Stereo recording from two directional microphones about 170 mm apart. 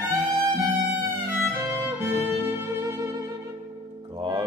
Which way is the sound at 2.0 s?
15° right (ahead or behind).